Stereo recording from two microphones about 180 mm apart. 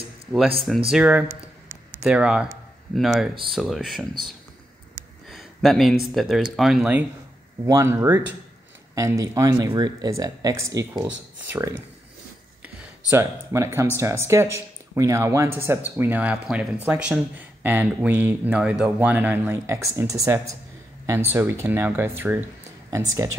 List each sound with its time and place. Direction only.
0.3 s speech: centre (ahead or behind)
5.3 s a sound: centre (ahead or behind)
6.1 s speech: centre (ahead or behind)
7.6 s speech: 15° right (ahead or behind)
13.1 s speech: 15° right (ahead or behind)